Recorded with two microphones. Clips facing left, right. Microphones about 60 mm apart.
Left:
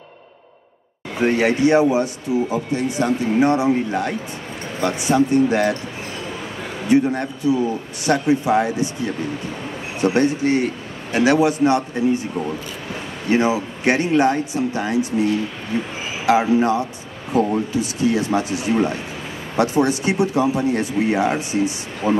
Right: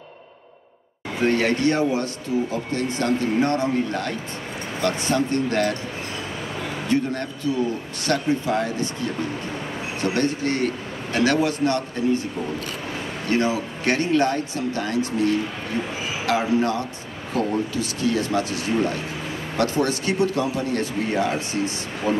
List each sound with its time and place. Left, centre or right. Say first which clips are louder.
1.2 s speech: left 3 dB; centre
6.9 s speech: left 7 dB; centre
13.3 s a man's voice: left 4 dB; centre